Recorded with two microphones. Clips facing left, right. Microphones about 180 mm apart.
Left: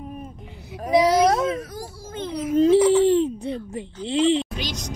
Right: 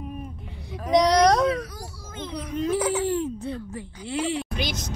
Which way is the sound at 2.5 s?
30° left (ahead or behind).